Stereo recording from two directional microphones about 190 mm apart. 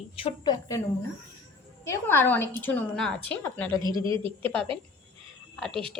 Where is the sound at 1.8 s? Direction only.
15° left (ahead or behind).